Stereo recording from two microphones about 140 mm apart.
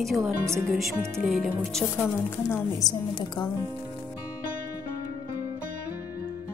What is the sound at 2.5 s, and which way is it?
A woman's voice, 25° left (ahead or behind).